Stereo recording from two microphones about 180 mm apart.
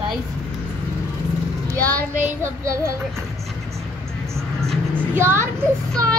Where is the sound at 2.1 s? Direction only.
10° right (ahead or behind).